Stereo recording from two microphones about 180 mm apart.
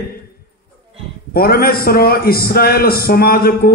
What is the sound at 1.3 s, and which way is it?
A man's voice, 55° left (ahead or behind).